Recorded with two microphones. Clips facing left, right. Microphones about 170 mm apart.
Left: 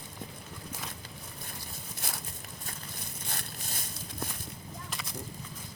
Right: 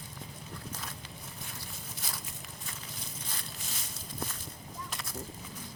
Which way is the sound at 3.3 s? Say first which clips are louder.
Left 2 dB; 60° left (ahead or behind).